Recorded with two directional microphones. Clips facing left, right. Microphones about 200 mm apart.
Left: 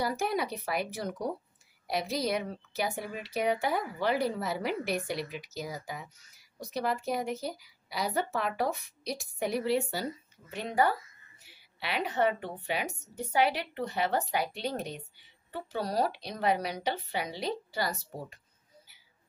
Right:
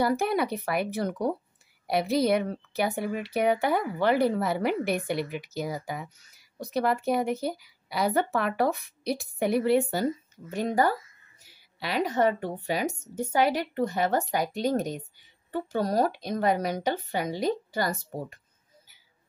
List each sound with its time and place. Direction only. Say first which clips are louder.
0.0 s a woman's voice: right 6 dB; 60° right (ahead or behind)